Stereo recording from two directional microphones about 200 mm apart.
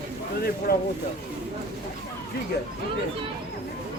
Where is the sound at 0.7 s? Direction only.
50° left (ahead or behind).